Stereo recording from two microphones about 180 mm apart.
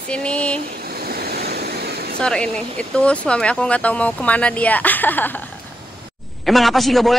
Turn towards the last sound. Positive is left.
turn(degrees=0)  # may be behind; listen again after turning